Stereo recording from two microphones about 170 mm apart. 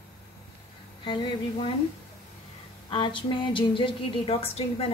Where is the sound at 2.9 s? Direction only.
30° left (ahead or behind).